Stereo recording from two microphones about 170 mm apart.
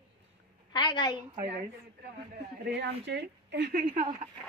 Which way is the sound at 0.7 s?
25° left (ahead or behind).